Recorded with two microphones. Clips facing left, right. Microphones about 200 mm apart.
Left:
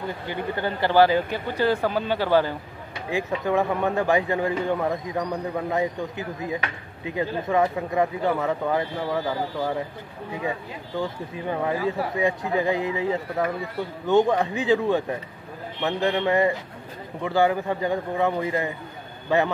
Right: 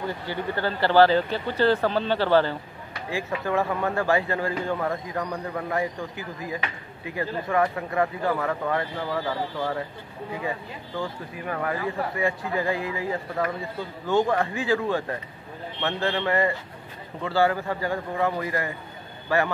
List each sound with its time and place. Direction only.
0.3 s speech: 20° left (ahead or behind)
11.0 s speech: 20° left (ahead or behind)